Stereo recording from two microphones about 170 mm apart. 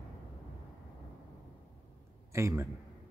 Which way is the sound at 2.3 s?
15° right (ahead or behind).